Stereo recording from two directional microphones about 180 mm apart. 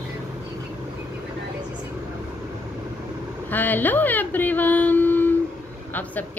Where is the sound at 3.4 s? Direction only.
10° left (ahead or behind).